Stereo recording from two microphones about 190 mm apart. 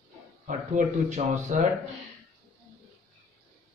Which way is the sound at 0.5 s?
40° right (ahead or behind).